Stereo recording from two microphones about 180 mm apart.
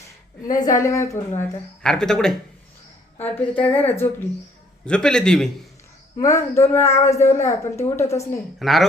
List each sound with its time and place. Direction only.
0.4 s a woman's voice: 20° left (ahead or behind)
1.4 s a woman's voice: 5° left (ahead or behind)
6.1 s a woman's voice: 15° left (ahead or behind)
8.5 s speech: centre (ahead or behind)